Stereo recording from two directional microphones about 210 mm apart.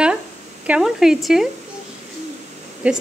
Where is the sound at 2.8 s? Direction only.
5° right (ahead or behind).